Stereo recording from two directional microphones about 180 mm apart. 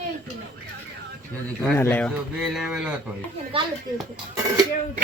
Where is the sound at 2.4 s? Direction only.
Centre (ahead or behind).